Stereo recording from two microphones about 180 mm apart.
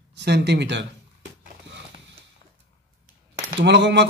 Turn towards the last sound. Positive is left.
turn(degrees=-75)  # may be behind; listen again after turning